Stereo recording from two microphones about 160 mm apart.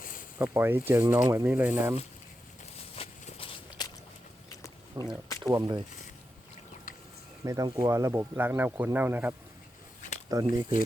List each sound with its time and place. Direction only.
0.0 s a sound: 60° left (ahead or behind)
0.3 s speech: 15° right (ahead or behind)
2.9 s walk: 35° left (ahead or behind)
4.9 s speech: 20° right (ahead or behind)
7.4 s speech: 20° right (ahead or behind)
10.3 s speech: 20° right (ahead or behind)